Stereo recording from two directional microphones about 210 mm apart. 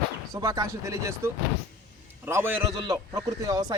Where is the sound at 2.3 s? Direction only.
10° right (ahead or behind).